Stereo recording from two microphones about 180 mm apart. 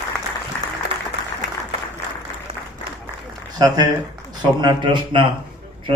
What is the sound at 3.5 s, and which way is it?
A man's voice, 20° right (ahead or behind).